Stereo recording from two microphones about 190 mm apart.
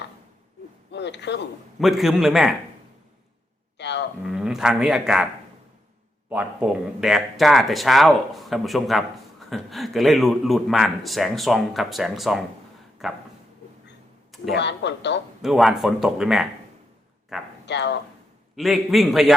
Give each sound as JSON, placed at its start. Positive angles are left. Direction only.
{"t": 0.9, "sound": "a sound", "side_deg": 65}
{"t": 1.8, "sound": "a man's voice", "side_deg": 0}
{"t": 3.8, "sound": "a sound", "side_deg": 65}
{"t": 4.3, "sound": "a man's voice", "side_deg": -5}
{"t": 14.5, "sound": "a man's voice", "side_deg": 65}
{"t": 15.4, "sound": "a man's voice", "side_deg": 0}
{"t": 17.7, "sound": "speech", "side_deg": 65}
{"t": 18.5, "sound": "a man's voice", "side_deg": 0}